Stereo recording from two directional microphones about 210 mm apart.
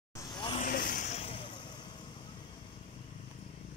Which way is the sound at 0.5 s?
40° left (ahead or behind).